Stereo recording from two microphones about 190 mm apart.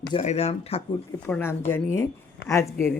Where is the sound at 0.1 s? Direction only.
35° left (ahead or behind).